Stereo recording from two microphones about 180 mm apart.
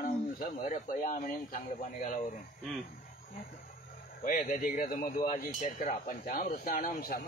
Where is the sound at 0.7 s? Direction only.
45° left (ahead or behind).